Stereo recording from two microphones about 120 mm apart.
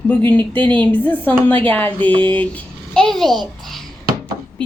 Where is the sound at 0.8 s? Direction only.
15° left (ahead or behind).